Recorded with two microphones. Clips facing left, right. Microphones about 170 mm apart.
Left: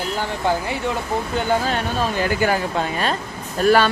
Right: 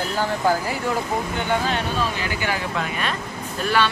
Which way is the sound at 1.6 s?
45° left (ahead or behind).